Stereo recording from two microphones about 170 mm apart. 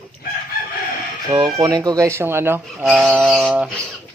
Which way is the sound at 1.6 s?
20° right (ahead or behind).